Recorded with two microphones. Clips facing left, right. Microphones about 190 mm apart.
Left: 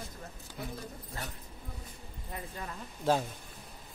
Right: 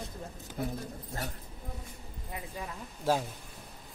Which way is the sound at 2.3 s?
5° right (ahead or behind).